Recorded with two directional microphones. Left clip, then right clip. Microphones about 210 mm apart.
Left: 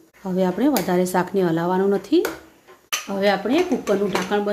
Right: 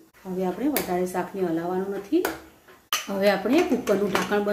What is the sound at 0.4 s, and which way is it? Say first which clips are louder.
Speech: left 6 dB; 55° left (ahead or behind).